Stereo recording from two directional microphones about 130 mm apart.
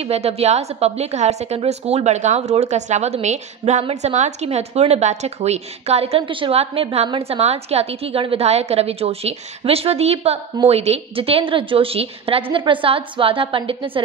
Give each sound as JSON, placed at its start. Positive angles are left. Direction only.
{"t": 0.0, "sound": "a woman's voice", "side_deg": -55}